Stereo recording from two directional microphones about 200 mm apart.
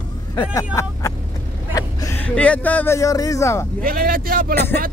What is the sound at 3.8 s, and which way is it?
Speech, 45° right (ahead or behind).